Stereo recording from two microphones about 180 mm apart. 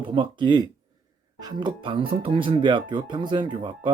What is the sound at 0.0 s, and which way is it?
Speech, 30° right (ahead or behind).